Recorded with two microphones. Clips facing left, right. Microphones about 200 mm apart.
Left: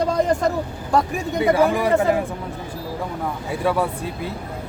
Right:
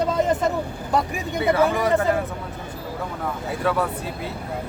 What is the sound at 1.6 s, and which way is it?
Speech, 10° left (ahead or behind).